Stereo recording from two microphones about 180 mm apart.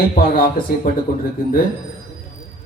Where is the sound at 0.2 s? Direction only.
50° left (ahead or behind).